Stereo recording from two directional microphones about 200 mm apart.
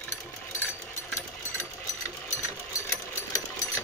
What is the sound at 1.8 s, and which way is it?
Sewing machine, 15° left (ahead or behind).